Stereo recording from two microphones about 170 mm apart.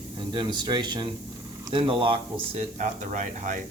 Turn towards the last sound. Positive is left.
turn(degrees=-50)  # may be behind; listen again after turning